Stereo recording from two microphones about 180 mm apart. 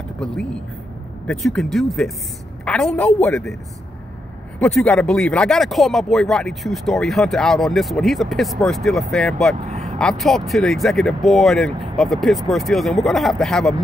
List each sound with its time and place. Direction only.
1.2 s speech: 5° left (ahead or behind)
4.6 s speech: 5° left (ahead or behind)
9.7 s vehicle: 40° right (ahead or behind)
9.9 s speech: centre (ahead or behind)